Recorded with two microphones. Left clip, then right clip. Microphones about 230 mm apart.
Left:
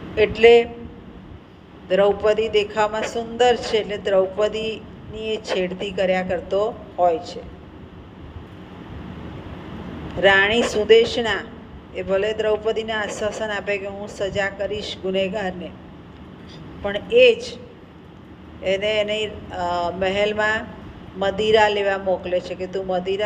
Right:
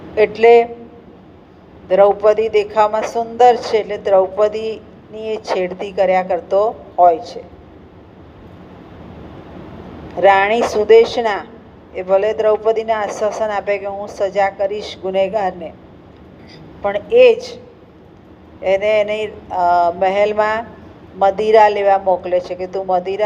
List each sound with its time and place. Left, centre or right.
0.1 s speech: right
1.9 s speech: right
10.2 s speech: right
16.8 s speech: right
18.6 s speech: right